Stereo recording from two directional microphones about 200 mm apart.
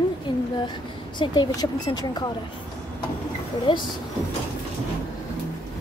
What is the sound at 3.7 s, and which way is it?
Speech, 25° left (ahead or behind).